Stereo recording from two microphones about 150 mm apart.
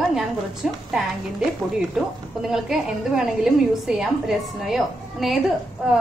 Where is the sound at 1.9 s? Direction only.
5° right (ahead or behind).